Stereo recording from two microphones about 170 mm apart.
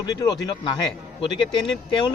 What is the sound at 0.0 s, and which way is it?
Speech, 25° left (ahead or behind).